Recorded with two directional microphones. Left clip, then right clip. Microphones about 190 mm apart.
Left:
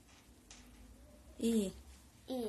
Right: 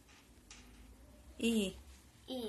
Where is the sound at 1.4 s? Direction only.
10° left (ahead or behind).